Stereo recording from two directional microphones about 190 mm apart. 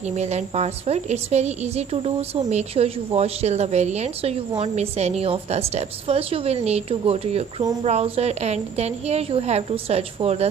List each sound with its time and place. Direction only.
0.1 s a woman's voice: 35° right (ahead or behind)